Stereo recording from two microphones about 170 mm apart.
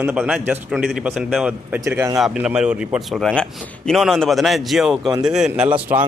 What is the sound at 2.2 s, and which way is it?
Speech, 5° right (ahead or behind).